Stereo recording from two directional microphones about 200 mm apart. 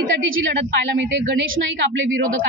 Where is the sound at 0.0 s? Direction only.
70° right (ahead or behind).